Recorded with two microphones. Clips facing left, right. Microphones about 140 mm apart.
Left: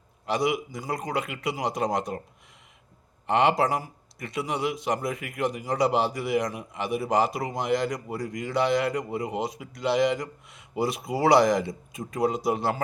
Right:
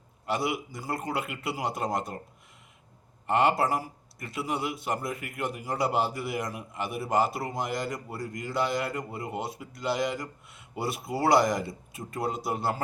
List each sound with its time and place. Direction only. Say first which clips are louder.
0.3 s a man's voice: left 4 dB; 5° right (ahead or behind)
3.2 s a man's voice: left 2 dB; 5° right (ahead or behind)
9.3 s speech: left 4 dB; 20° left (ahead or behind)
9.6 s a man's voice: left 6 dB; centre (ahead or behind)
11.3 s a man's voice: left 4 dB; centre (ahead or behind)